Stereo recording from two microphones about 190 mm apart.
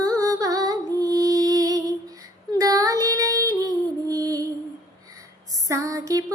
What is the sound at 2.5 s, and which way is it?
Child singing, 20° right (ahead or behind).